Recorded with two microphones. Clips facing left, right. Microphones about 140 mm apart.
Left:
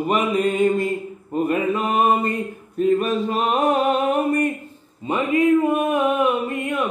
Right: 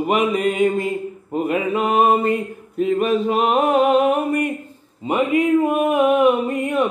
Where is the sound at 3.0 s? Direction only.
5° right (ahead or behind).